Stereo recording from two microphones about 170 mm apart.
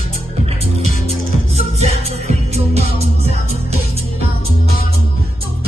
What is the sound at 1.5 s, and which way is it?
Music, 40° right (ahead or behind).